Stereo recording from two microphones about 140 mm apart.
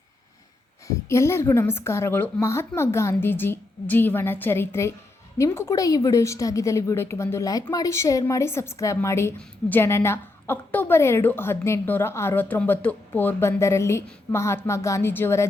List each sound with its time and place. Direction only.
1.0 s a woman's voice: 20° left (ahead or behind)